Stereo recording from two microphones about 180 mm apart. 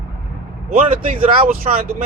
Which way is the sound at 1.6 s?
55° right (ahead or behind).